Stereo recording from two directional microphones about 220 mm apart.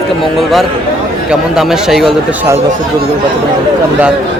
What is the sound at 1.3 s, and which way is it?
Speech, centre (ahead or behind).